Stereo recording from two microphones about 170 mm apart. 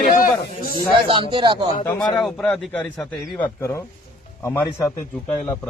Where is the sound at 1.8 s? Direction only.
10° left (ahead or behind).